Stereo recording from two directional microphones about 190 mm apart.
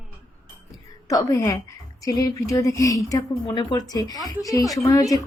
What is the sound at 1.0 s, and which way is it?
A woman's voice, 15° left (ahead or behind).